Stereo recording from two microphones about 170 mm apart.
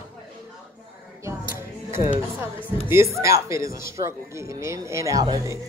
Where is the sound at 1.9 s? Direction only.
15° right (ahead or behind).